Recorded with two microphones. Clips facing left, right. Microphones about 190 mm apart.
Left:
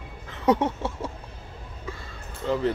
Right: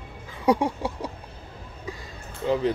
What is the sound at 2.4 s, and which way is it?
Speech, 15° right (ahead or behind).